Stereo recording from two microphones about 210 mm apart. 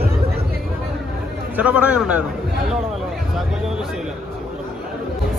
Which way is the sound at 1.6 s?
5° right (ahead or behind).